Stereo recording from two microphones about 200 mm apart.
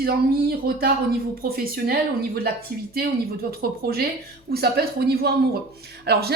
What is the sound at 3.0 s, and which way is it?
A woman's voice, 50° right (ahead or behind).